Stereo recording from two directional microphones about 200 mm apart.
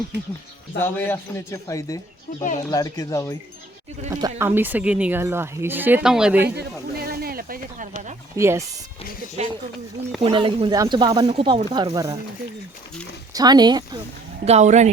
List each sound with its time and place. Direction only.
0.8 s speech: 10° left (ahead or behind)
4.1 s speech: 15° right (ahead or behind)
6.4 s a sound: 50° right (ahead or behind)
8.4 s speech: 15° right (ahead or behind)
9.4 s speech: 35° right (ahead or behind); by 12.2 s 15° right (ahead or behind)
13.3 s speech: 20° right (ahead or behind)
14.4 s speech: 35° right (ahead or behind)